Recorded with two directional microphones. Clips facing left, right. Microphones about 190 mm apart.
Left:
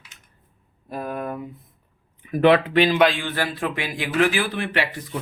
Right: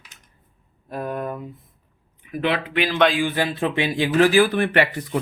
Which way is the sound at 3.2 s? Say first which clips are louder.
Right 4 dB; 15° right (ahead or behind).